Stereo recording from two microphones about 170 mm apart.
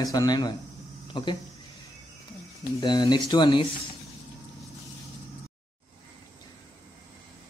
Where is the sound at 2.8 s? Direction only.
25° left (ahead or behind).